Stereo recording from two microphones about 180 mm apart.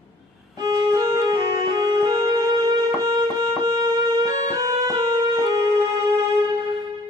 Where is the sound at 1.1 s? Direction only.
20° right (ahead or behind).